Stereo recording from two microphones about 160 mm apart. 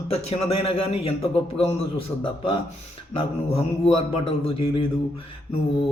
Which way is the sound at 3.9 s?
35° left (ahead or behind).